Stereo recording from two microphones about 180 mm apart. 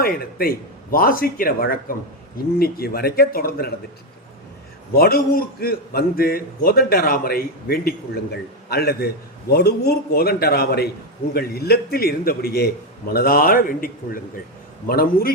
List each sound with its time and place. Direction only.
0.0 s a man's voice: 55° left (ahead or behind)
4.9 s a man's voice: 55° left (ahead or behind)